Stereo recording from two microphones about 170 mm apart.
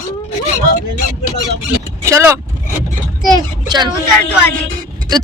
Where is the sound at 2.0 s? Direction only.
15° right (ahead or behind).